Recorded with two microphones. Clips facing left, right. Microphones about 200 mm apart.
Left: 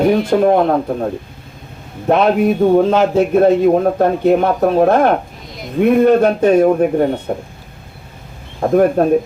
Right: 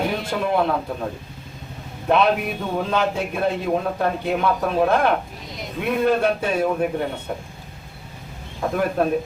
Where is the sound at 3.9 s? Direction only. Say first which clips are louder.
Left 10 dB; 45° left (ahead or behind).